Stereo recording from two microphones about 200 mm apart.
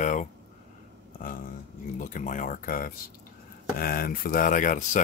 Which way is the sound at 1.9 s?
40° left (ahead or behind).